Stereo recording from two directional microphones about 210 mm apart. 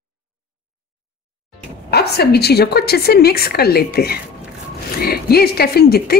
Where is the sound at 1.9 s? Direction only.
50° left (ahead or behind).